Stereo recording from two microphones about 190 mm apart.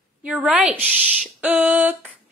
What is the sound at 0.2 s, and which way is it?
A woman's voice, 5° right (ahead or behind).